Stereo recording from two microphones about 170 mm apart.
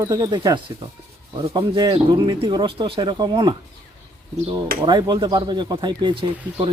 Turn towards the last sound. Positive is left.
turn(degrees=-30)  # may be behind; listen again after turning